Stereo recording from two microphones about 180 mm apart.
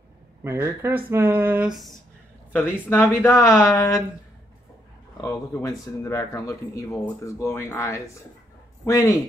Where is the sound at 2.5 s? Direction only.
10° left (ahead or behind).